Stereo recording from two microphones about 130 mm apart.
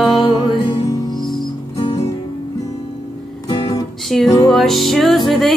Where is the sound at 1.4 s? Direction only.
45° left (ahead or behind).